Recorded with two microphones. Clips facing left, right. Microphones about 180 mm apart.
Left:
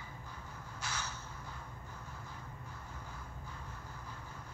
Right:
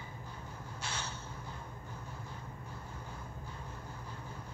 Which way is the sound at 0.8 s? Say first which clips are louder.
Even; 30° right (ahead or behind).